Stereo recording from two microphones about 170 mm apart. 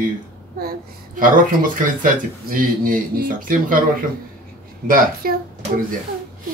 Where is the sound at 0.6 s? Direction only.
60° right (ahead or behind).